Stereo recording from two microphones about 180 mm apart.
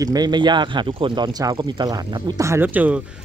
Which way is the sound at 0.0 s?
20° right (ahead or behind).